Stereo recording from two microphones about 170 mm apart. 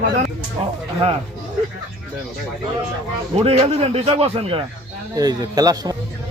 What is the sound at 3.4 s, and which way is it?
A man's voice, 35° right (ahead or behind).